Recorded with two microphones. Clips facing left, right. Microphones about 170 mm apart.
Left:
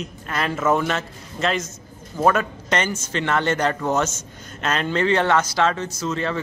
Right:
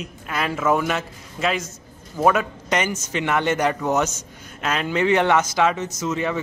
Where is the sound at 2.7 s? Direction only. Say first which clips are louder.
Even; 15° right (ahead or behind).